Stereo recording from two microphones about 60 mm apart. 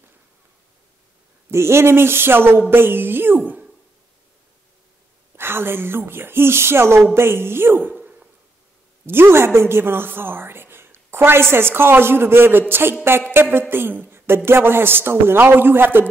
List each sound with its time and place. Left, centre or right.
1.5 s a woman's voice: right
5.3 s a woman's voice: right
7.9 s a sound: right
9.0 s a woman's voice: right